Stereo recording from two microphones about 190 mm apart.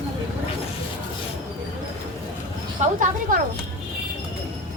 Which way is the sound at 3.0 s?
45° right (ahead or behind).